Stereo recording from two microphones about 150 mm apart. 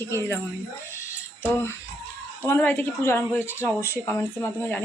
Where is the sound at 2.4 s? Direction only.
15° left (ahead or behind).